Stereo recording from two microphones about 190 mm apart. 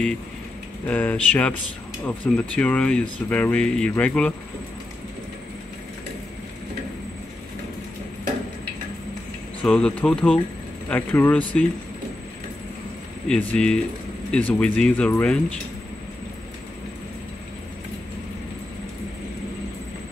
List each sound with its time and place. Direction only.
0.8 s speech: 10° left (ahead or behind)
9.7 s speech: 5° left (ahead or behind)
13.3 s speech: 5° left (ahead or behind)